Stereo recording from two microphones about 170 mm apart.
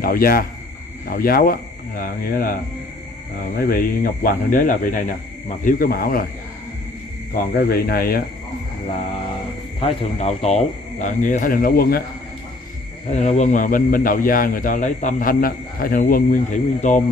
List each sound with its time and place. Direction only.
0.0 s a man's voice: 60° left (ahead or behind)
3.5 s a man's voice: 60° left (ahead or behind)
7.3 s a man's voice: 65° left (ahead or behind)
9.8 s a man's voice: 40° left (ahead or behind); by 12.0 s 60° left (ahead or behind)
13.1 s a man's voice: 45° left (ahead or behind)